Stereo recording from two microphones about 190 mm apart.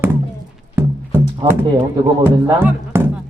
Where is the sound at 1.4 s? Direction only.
25° right (ahead or behind).